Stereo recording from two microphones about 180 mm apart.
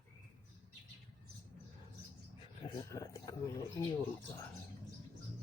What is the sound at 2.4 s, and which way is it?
Speech, 25° left (ahead or behind).